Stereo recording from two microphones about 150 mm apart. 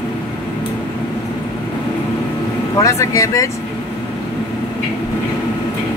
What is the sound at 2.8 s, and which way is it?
Speech, 20° left (ahead or behind).